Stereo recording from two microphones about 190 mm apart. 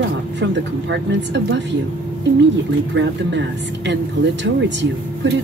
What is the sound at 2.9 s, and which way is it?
A woman's voice, 70° right (ahead or behind).